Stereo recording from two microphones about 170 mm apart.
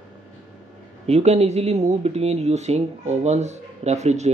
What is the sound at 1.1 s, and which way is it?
Speech, 40° right (ahead or behind).